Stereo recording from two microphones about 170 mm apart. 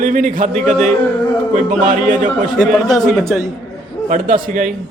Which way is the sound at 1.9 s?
45° right (ahead or behind).